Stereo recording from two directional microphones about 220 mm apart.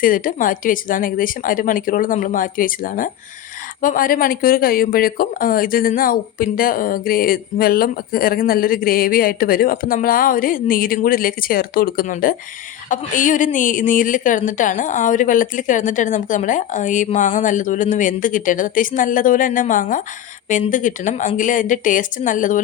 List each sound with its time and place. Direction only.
0.0 s speech: 40° left (ahead or behind)